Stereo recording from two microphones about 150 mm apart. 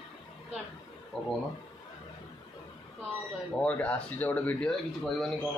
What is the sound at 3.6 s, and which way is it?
Speech, 10° left (ahead or behind).